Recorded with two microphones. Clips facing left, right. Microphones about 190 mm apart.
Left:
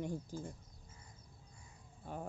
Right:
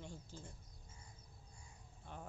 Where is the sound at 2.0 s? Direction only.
45° left (ahead or behind).